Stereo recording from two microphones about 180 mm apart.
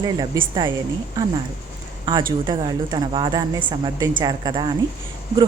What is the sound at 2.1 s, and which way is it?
A woman's voice, 20° right (ahead or behind).